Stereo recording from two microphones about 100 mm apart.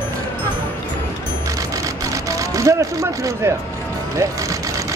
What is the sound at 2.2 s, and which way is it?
Speech, 35° right (ahead or behind).